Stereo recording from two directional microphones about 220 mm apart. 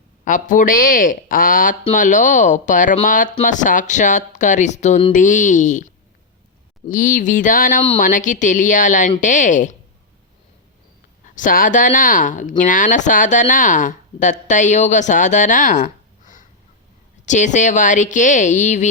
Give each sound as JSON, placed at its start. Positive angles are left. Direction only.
{"t": 0.3, "sound": "speech", "side_deg": 35}
{"t": 11.3, "sound": "speech", "side_deg": 35}